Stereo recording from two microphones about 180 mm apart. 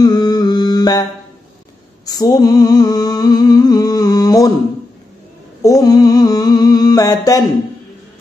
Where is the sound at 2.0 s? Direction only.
20° left (ahead or behind).